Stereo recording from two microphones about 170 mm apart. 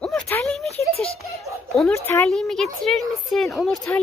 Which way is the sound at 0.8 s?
Centre (ahead or behind).